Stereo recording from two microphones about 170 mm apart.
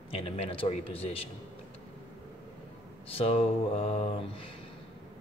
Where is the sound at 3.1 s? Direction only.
35° left (ahead or behind).